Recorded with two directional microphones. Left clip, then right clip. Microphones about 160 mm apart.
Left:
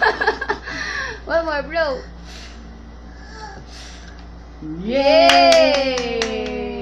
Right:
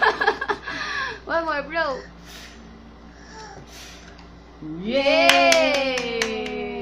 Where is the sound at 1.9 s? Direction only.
25° right (ahead or behind).